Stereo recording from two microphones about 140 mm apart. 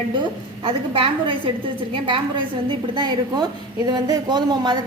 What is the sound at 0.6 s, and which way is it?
Speech, 40° right (ahead or behind).